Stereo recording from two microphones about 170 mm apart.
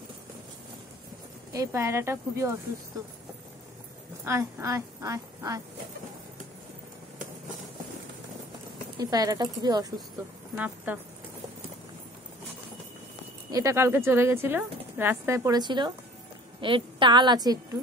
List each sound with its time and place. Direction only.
1.5 s speech: 20° right (ahead or behind)
4.2 s speech: 15° right (ahead or behind)
9.0 s a woman's voice: 20° right (ahead or behind)
10.5 s speech: 10° right (ahead or behind)
13.5 s a woman's voice: 20° right (ahead or behind)